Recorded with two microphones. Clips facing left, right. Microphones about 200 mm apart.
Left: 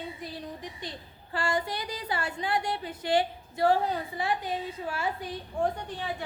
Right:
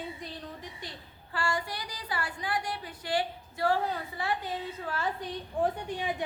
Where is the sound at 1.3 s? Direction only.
20° left (ahead or behind).